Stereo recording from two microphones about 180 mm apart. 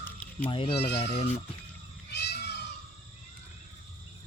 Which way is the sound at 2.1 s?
65° left (ahead or behind).